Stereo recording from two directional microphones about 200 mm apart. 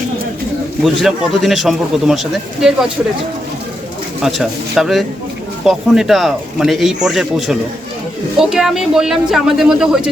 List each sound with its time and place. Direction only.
1.0 s a man's voice: centre (ahead or behind)
4.2 s a man's voice: centre (ahead or behind)